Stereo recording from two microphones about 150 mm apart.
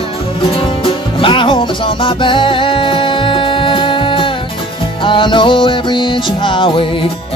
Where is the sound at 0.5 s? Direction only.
35° left (ahead or behind).